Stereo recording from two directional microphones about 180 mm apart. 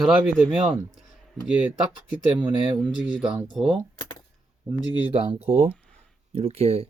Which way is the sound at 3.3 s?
5° right (ahead or behind).